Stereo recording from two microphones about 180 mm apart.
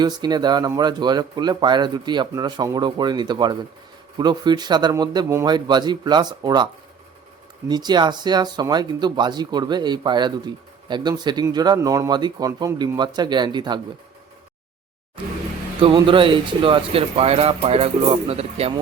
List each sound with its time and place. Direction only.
0.0 s speech: 25° right (ahead or behind)
7.7 s speech: 25° right (ahead or behind)
15.8 s speech: 30° right (ahead or behind)